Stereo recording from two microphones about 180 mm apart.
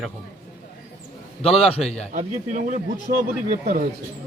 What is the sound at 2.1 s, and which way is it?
Speech, 40° right (ahead or behind).